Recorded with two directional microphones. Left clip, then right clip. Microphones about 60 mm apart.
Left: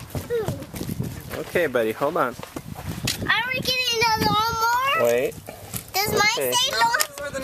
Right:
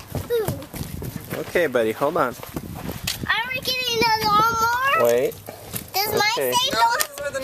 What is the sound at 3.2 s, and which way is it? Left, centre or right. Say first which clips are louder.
Child singing: left 1 dB; centre.